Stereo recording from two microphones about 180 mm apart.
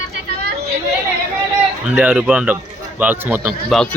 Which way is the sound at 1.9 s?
5° right (ahead or behind).